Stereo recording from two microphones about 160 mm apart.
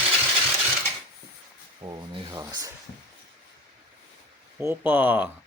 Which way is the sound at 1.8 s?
25° right (ahead or behind).